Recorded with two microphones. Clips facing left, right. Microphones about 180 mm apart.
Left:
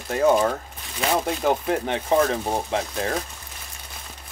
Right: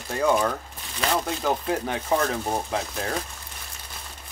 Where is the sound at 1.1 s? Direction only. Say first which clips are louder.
Left 3 dB; 10° left (ahead or behind).